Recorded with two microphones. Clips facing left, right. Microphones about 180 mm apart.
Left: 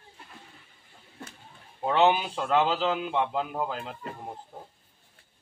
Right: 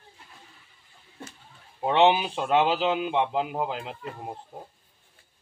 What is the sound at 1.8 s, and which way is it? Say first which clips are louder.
A man's voice: right 2 dB; 20° right (ahead or behind).